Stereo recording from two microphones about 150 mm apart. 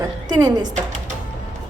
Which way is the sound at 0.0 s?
25° right (ahead or behind).